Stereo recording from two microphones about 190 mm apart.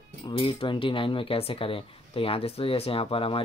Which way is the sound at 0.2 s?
25° left (ahead or behind).